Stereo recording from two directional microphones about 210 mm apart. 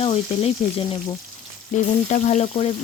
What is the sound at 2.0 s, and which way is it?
Frying, 35° left (ahead or behind).